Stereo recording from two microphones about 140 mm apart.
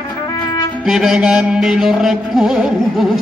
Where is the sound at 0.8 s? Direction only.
5° right (ahead or behind).